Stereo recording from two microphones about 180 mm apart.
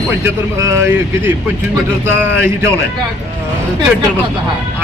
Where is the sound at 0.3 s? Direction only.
15° right (ahead or behind).